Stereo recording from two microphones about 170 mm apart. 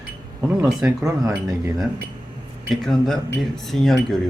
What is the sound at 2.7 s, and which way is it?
Speech, centre (ahead or behind).